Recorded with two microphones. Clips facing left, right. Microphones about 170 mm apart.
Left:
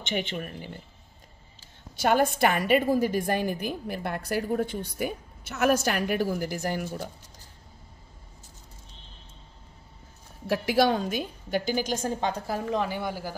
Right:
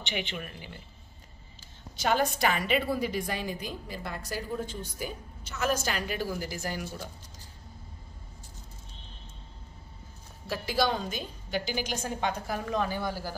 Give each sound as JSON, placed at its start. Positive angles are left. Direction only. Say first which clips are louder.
{"t": 0.0, "sound": "a woman's voice", "louder": "left 5 dB", "side_deg": 45}
{"t": 2.0, "sound": "a woman's voice", "louder": "left 4 dB", "side_deg": 50}
{"t": 10.4, "sound": "a woman's voice", "louder": "left 6 dB", "side_deg": 65}